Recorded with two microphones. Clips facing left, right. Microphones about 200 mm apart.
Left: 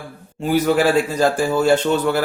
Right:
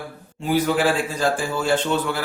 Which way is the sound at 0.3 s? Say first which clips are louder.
Left 4 dB; 40° left (ahead or behind).